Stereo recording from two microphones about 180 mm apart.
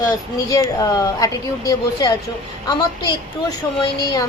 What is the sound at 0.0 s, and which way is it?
A woman's voice, 20° left (ahead or behind).